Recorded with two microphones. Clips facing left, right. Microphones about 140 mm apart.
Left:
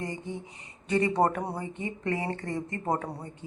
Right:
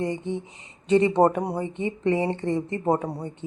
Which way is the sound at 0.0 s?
25° right (ahead or behind).